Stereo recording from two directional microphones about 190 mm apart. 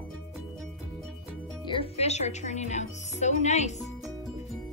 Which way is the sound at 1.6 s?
30° left (ahead or behind).